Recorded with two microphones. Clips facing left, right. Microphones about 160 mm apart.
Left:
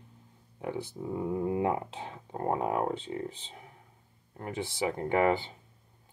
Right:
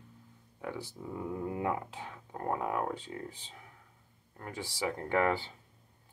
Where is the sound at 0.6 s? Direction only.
20° left (ahead or behind).